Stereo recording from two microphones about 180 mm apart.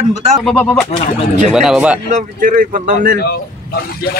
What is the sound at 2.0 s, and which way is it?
A man's voice, 45° right (ahead or behind).